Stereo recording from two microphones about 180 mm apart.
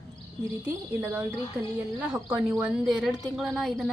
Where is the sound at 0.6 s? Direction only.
10° right (ahead or behind).